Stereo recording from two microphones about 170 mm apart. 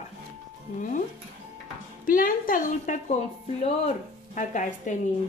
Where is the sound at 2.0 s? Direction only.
55° left (ahead or behind).